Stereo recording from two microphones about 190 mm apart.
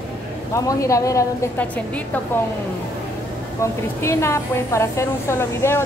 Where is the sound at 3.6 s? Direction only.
15° left (ahead or behind).